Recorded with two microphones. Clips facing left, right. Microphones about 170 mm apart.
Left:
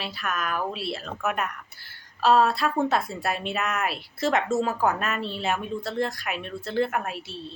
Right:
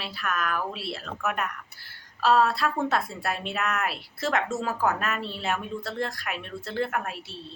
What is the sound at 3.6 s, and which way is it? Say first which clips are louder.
Speech: right 1 dB; 20° left (ahead or behind).